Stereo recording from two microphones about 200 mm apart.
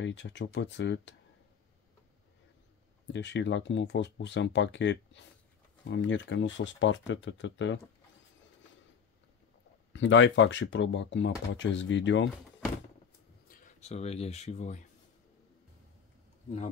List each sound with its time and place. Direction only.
0.0 s speech: 60° left (ahead or behind)
3.1 s speech: 60° left (ahead or behind)
9.9 s speech: 70° left (ahead or behind)
13.5 s speech: 35° left (ahead or behind)